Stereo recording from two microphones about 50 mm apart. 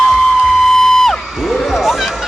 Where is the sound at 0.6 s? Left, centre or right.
Centre.